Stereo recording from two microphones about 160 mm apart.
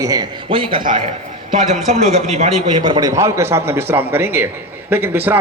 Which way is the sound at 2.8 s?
25° right (ahead or behind).